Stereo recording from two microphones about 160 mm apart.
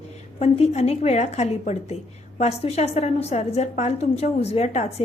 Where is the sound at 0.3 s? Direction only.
40° left (ahead or behind).